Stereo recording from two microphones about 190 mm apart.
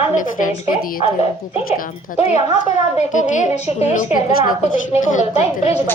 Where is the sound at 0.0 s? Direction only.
45° left (ahead or behind).